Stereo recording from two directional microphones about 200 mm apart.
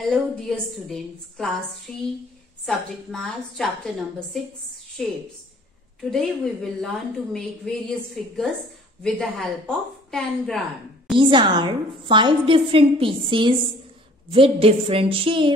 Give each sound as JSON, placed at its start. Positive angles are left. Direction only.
{"t": 0.0, "sound": "a woman's voice", "side_deg": 0}
{"t": 5.0, "sound": "a woman's voice", "side_deg": 0}
{"t": 11.1, "sound": "a woman's voice", "side_deg": -25}